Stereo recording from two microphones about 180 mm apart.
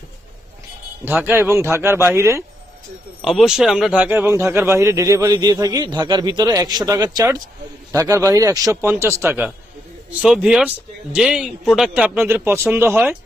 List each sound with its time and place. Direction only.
1.0 s speech: 10° right (ahead or behind)
3.2 s speech: centre (ahead or behind)